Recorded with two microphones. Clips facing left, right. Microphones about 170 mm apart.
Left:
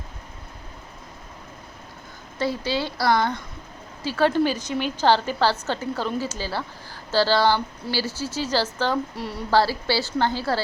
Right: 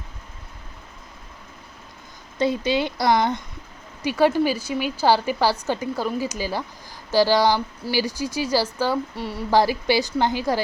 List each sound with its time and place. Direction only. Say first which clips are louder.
2.4 s a woman's voice: right 4 dB; 20° right (ahead or behind)
9.1 s speech: right 1 dB; centre (ahead or behind)
9.5 s a woman's voice: right 2 dB; 15° right (ahead or behind)